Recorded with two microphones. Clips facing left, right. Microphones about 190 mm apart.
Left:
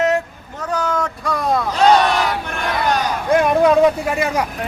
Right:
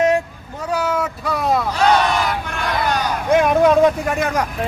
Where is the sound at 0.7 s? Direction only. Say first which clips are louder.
Even; 10° right (ahead or behind).